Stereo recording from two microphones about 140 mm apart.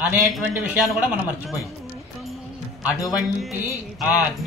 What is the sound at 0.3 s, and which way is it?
Speech, centre (ahead or behind).